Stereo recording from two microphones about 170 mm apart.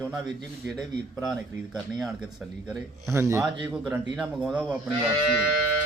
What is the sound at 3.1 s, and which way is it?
Speech, 15° right (ahead or behind).